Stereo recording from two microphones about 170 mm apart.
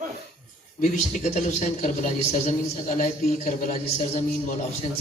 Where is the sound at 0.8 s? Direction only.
45° left (ahead or behind).